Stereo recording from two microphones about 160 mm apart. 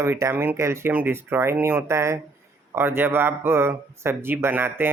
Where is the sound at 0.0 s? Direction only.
15° right (ahead or behind).